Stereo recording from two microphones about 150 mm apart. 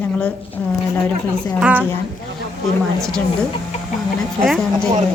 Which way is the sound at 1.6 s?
10° right (ahead or behind).